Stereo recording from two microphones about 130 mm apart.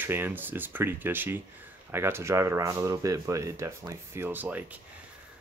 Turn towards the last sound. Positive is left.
turn(degrees=-10)  # may be behind; listen again after turning